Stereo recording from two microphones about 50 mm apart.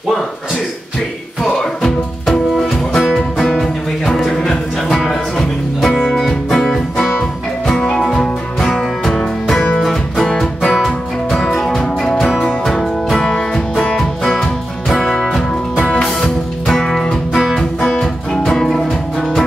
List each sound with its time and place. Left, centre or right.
1.4 s music: centre
16.6 s music: centre
17.3 s music: centre
17.7 s music: centre